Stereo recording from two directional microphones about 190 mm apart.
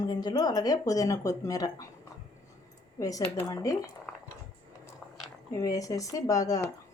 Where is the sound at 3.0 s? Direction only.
20° left (ahead or behind).